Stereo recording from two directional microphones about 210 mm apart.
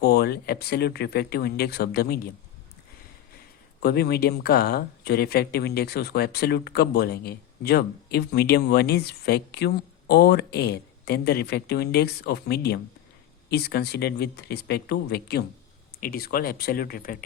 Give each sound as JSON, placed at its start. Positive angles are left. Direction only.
{"t": 0.0, "sound": "speech", "side_deg": 50}
{"t": 3.8, "sound": "speech", "side_deg": 50}